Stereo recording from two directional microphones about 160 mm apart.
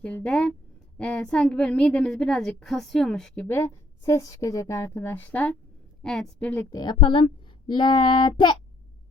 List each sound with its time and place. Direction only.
0.0 s a woman's voice: 5° left (ahead or behind)
3.4 s a woman's voice: 15° left (ahead or behind)
6.7 s child singing: 25° left (ahead or behind)